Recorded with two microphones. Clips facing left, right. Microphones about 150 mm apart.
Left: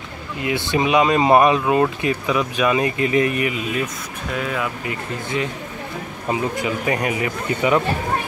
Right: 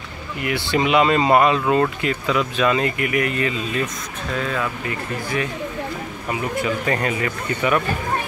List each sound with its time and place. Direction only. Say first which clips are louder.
0.4 s speech: left 1 dB; 20° left (ahead or behind)
3.0 s speech: left 3 dB; 25° left (ahead or behind)